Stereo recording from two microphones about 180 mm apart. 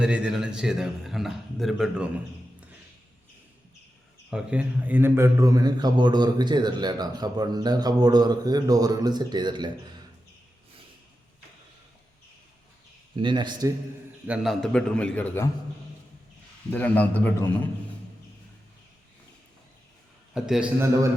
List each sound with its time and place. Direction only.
0.0 s a man's voice: 5° right (ahead or behind)
4.3 s a man's voice: 5° right (ahead or behind); by 9.7 s 25° right (ahead or behind)
13.1 s a man's voice: 25° right (ahead or behind)
14.3 s a man's voice: 5° right (ahead or behind)
16.6 s a man's voice: 10° left (ahead or behind)
20.3 s a man's voice: 5° right (ahead or behind)